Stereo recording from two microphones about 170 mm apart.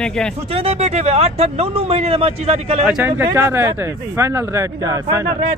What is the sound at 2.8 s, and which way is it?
Speech, 10° right (ahead or behind).